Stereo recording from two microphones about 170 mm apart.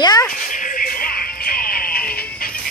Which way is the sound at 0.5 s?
50° left (ahead or behind).